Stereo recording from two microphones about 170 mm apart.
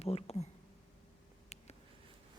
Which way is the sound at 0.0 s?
35° left (ahead or behind).